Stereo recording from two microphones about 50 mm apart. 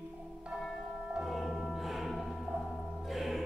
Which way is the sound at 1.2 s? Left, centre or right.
Centre.